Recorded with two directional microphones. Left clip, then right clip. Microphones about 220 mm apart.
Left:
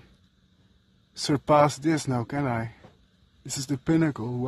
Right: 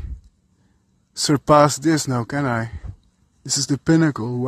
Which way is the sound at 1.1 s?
20° right (ahead or behind).